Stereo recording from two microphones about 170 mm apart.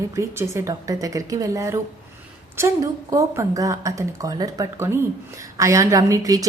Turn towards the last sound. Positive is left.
turn(degrees=-20)  # may be behind; listen again after turning